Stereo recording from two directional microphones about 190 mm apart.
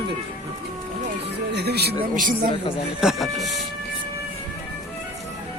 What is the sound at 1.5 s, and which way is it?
Speech, 60° right (ahead or behind).